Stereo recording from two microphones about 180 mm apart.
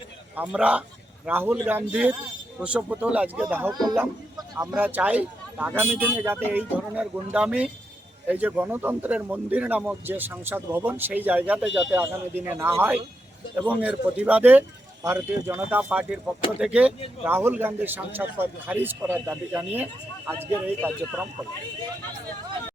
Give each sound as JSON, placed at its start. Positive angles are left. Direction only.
{"t": 0.3, "sound": "a man's voice", "side_deg": -5}
{"t": 4.7, "sound": "speech", "side_deg": -10}